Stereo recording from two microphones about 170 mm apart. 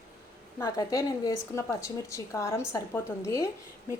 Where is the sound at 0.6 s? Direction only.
20° left (ahead or behind).